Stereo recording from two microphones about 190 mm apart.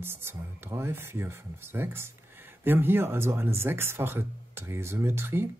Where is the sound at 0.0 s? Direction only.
10° right (ahead or behind).